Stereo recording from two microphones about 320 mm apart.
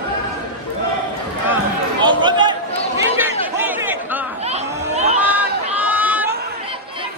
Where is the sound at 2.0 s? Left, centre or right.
Centre.